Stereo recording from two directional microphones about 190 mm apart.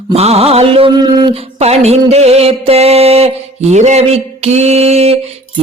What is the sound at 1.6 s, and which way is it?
Mantra, 35° right (ahead or behind).